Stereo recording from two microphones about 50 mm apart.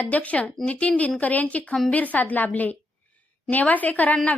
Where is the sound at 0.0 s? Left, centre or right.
Left.